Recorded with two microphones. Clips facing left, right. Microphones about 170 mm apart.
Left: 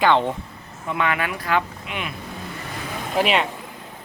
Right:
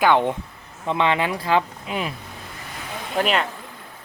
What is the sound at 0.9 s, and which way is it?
Speech, 25° right (ahead or behind).